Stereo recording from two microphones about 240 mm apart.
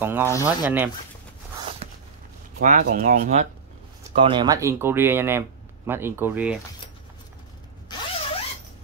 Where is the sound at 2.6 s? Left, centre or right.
Right.